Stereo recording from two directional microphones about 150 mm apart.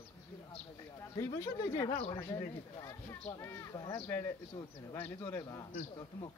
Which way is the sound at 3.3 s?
20° left (ahead or behind).